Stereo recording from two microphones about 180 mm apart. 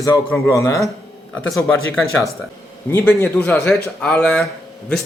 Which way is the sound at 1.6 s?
Centre (ahead or behind).